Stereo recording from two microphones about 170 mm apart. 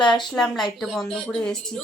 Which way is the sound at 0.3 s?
Centre (ahead or behind).